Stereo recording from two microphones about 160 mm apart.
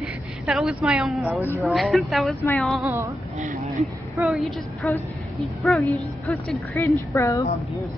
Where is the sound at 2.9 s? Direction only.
15° right (ahead or behind).